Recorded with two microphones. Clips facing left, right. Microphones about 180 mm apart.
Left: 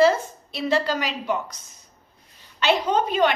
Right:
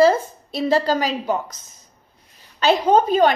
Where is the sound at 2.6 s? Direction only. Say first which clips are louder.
Right 5 dB; 40° right (ahead or behind).